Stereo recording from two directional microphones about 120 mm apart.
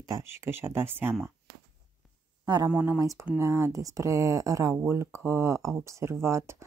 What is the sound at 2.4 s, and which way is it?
Speech, 35° right (ahead or behind).